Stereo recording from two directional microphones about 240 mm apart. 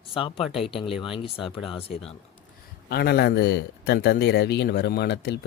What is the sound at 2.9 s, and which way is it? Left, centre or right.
Speech, left.